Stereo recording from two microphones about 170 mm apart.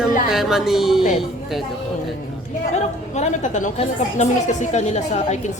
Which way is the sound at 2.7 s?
40° left (ahead or behind).